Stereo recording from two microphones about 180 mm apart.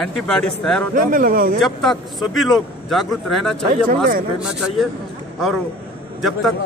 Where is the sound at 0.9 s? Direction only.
50° right (ahead or behind).